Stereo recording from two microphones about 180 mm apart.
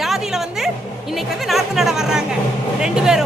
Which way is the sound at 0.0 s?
Centre (ahead or behind).